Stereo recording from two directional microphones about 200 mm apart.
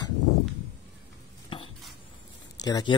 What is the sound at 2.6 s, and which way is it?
Speech, 20° left (ahead or behind).